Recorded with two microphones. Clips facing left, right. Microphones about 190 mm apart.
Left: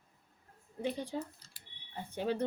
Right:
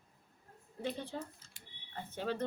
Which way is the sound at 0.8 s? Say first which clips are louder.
Left 3 dB; 15° left (ahead or behind).